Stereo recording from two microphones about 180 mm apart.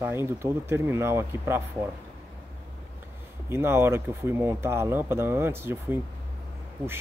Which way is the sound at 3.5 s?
15° right (ahead or behind).